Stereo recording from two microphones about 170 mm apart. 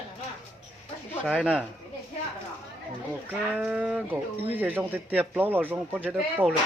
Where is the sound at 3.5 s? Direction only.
5° right (ahead or behind).